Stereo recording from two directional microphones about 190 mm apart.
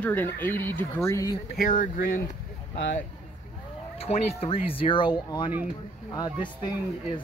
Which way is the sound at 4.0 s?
30° left (ahead or behind).